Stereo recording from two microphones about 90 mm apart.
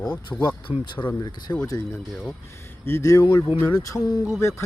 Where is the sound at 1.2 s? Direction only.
50° left (ahead or behind).